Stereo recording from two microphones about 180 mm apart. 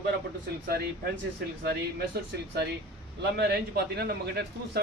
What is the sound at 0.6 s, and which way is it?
Speech, 60° right (ahead or behind).